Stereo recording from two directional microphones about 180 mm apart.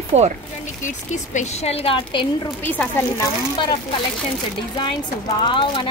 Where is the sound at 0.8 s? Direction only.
45° left (ahead or behind).